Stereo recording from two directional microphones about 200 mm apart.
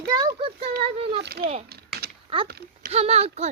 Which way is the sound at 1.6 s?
50° right (ahead or behind).